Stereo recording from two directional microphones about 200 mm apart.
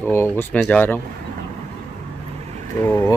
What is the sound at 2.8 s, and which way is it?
Speech, 10° left (ahead or behind).